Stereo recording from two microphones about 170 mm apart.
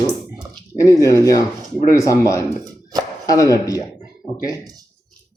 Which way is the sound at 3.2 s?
20° left (ahead or behind).